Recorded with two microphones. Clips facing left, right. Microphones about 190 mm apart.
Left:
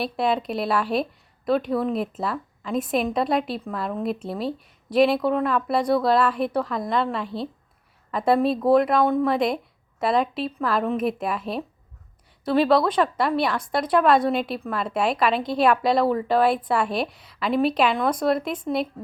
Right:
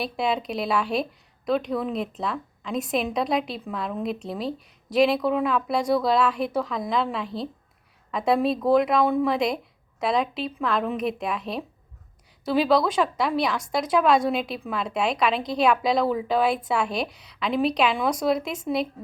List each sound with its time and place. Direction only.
0.0 s a woman's voice: centre (ahead or behind)